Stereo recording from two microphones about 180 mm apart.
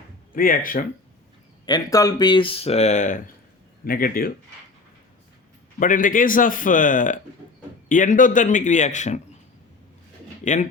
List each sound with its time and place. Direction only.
0.3 s a man's voice: 50° left (ahead or behind)
1.6 s speech: 20° left (ahead or behind); by 3.2 s 40° left (ahead or behind)
3.8 s a man's voice: 55° left (ahead or behind)
5.8 s a man's voice: 50° left (ahead or behind)
10.4 s speech: 45° left (ahead or behind)